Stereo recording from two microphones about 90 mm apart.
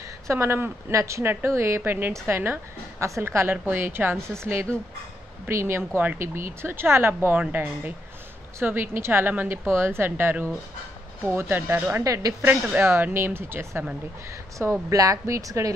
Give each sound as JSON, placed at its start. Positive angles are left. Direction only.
{"t": 0.3, "sound": "a woman's voice", "side_deg": -30}
{"t": 12.4, "sound": "a woman's voice", "side_deg": -25}